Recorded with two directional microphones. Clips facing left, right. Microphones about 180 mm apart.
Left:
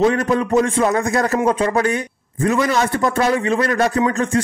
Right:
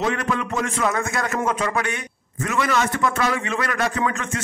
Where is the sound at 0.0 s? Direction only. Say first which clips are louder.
Left 7 dB; 35° left (ahead or behind).